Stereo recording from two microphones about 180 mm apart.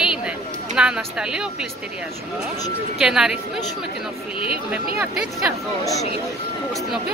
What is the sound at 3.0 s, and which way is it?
Speech, 5° right (ahead or behind).